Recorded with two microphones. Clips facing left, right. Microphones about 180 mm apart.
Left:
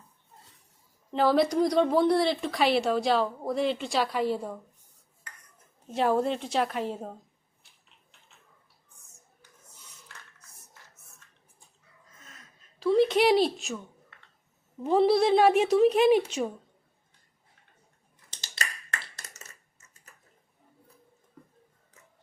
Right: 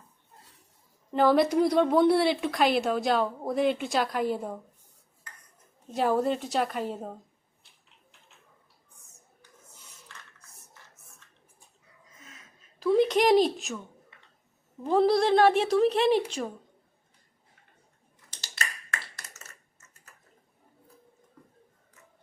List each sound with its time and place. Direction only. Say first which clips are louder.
1.1 s a woman's voice: right 1 dB; centre (ahead or behind)
5.9 s a woman's voice: even; centre (ahead or behind)
12.8 s a woman's voice: even; centre (ahead or behind)
14.8 s a woman's voice: left 1 dB; 5° left (ahead or behind)
18.5 s a sound: even; 25° left (ahead or behind)